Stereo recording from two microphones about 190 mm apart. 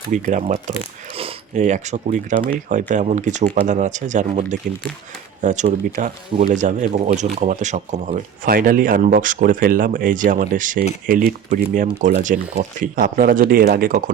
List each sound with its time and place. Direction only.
0.1 s speech: 40° right (ahead or behind)